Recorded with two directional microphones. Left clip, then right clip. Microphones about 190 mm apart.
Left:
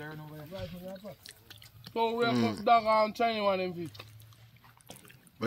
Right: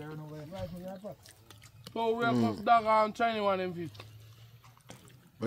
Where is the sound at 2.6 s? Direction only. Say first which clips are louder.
Left 1 dB; 20° left (ahead or behind).